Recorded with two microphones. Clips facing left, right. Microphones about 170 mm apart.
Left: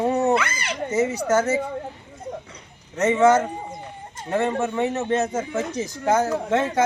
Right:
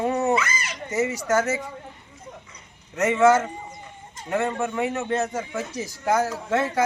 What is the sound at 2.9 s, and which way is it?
Speech, 20° left (ahead or behind).